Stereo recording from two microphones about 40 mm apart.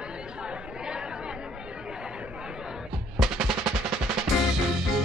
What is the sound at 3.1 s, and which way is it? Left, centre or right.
Music, centre.